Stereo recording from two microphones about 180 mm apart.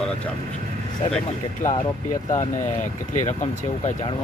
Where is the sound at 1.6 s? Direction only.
45° left (ahead or behind).